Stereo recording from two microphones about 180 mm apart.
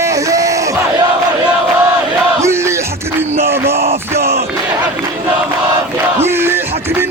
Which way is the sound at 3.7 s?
35° right (ahead or behind).